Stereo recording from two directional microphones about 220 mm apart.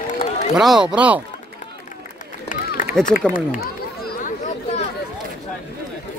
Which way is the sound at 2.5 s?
35° left (ahead or behind).